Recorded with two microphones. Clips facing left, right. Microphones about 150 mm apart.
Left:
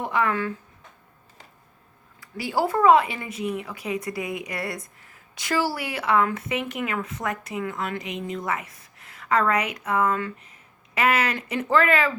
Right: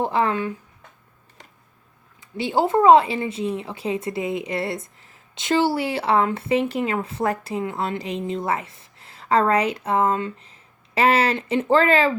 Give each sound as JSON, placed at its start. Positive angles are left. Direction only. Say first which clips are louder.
{"t": 0.0, "sound": "speech", "louder": "right 3 dB", "side_deg": -30}
{"t": 2.2, "sound": "speech", "louder": "right 3 dB", "side_deg": -20}